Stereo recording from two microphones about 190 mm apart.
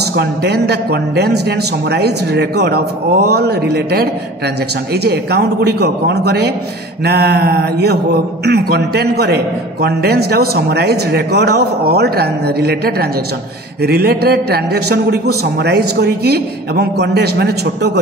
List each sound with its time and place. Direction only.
0.1 s a man's voice: 60° right (ahead or behind)